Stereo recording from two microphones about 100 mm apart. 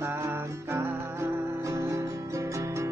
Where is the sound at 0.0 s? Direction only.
25° right (ahead or behind).